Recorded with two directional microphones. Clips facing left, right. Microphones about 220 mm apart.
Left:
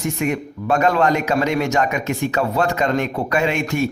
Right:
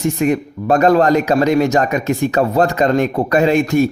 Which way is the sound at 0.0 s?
35° right (ahead or behind).